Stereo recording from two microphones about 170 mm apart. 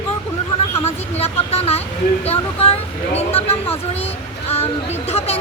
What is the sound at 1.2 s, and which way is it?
A woman's voice, 40° left (ahead or behind).